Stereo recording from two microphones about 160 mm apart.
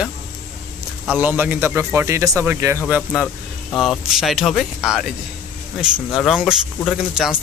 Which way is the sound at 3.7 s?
Centre (ahead or behind).